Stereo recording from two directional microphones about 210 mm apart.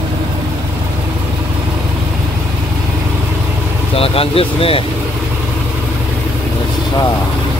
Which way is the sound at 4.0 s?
25° left (ahead or behind).